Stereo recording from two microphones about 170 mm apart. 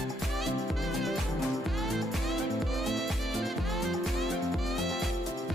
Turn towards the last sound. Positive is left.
turn(degrees=0)  # may be behind; listen again after turning